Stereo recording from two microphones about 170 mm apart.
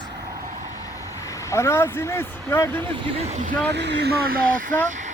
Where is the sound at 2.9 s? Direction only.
30° right (ahead or behind).